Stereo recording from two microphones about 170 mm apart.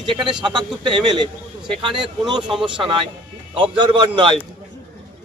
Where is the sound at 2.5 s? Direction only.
5° right (ahead or behind).